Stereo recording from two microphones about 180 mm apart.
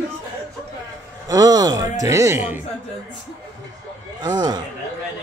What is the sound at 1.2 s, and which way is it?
Speech, 20° right (ahead or behind).